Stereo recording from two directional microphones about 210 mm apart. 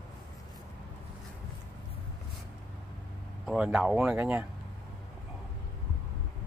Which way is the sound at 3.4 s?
5° right (ahead or behind).